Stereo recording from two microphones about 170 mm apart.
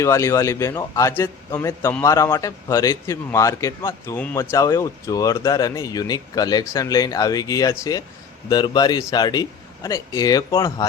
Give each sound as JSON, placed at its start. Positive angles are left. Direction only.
{"t": 0.0, "sound": "a man's voice", "side_deg": 15}